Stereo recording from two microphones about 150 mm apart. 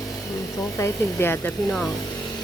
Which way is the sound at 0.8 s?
15° left (ahead or behind).